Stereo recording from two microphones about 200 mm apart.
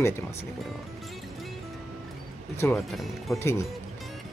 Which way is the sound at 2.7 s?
Centre (ahead or behind).